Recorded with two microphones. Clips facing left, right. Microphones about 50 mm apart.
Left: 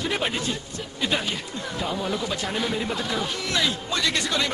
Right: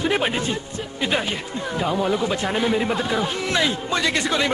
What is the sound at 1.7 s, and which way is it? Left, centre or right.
Speech, right.